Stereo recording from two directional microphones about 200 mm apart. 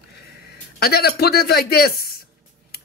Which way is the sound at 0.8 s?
50° left (ahead or behind).